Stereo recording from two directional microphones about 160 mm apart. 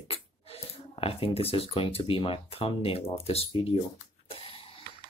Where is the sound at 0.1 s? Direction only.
35° left (ahead or behind).